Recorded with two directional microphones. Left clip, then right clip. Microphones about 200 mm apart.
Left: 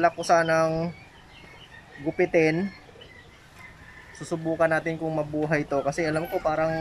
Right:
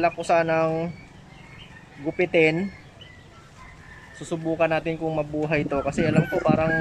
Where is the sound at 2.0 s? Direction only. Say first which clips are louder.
Right 2 dB; centre (ahead or behind).